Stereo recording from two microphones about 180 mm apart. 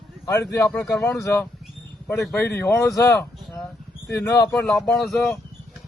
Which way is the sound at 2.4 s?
15° left (ahead or behind).